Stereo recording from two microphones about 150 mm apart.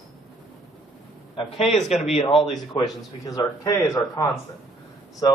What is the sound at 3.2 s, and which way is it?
Speech, 25° left (ahead or behind).